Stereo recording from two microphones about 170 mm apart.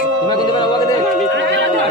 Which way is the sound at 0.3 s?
25° left (ahead or behind).